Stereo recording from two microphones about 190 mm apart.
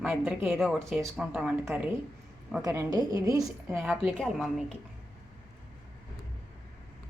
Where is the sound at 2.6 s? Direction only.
20° right (ahead or behind).